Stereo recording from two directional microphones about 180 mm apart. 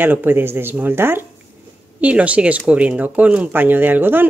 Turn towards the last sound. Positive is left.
turn(degrees=-10)  # may be behind; listen again after turning